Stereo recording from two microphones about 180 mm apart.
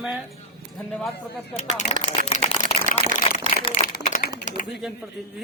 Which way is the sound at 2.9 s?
45° left (ahead or behind).